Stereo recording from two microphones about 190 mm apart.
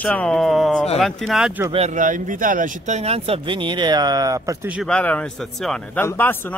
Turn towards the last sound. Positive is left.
turn(degrees=10)  # may be behind; listen again after turning